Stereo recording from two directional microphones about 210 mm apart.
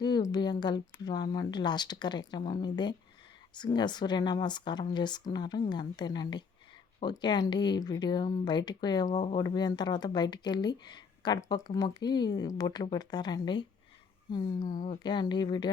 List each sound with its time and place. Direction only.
0.0 s speech: 20° left (ahead or behind)
14.6 s a woman's voice: 40° left (ahead or behind)
14.8 s speech: 20° left (ahead or behind)